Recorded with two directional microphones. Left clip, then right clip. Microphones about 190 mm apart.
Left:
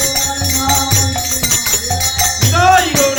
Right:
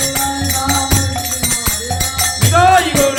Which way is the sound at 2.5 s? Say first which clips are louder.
Right 1 dB; 20° right (ahead or behind).